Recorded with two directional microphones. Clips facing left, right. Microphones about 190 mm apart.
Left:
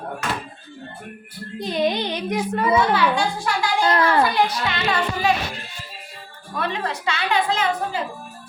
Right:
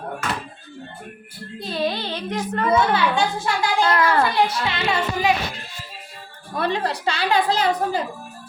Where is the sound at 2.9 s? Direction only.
25° right (ahead or behind).